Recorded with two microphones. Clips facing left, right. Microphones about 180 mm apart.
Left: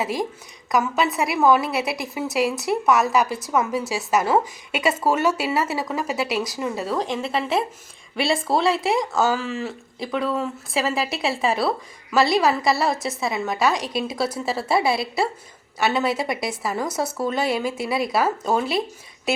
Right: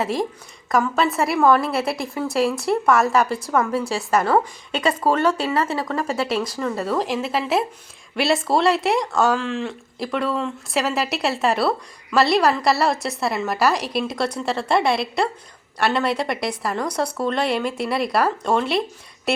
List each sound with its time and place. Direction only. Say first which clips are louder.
0.0 s a woman's voice: right 2 dB; centre (ahead or behind)